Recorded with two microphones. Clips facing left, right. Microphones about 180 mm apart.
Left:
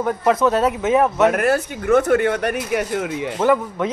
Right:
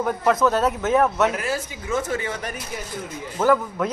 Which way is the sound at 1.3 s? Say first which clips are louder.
Left 8 dB; 60° left (ahead or behind).